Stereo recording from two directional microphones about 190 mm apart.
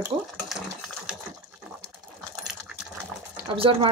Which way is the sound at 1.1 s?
5° right (ahead or behind).